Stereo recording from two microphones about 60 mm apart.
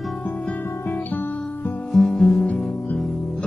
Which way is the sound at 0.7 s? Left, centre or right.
Left.